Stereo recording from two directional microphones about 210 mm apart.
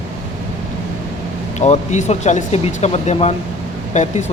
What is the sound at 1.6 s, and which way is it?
Speech, 35° left (ahead or behind).